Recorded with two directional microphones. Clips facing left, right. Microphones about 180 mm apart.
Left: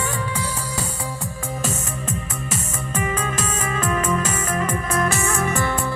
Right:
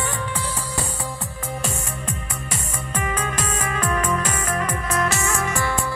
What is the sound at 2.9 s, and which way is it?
Music, 25° left (ahead or behind).